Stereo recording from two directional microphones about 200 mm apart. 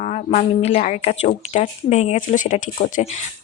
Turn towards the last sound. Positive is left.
turn(degrees=40)  # may be behind; listen again after turning